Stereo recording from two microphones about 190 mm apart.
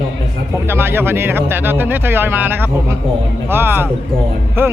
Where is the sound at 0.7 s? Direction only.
10° right (ahead or behind).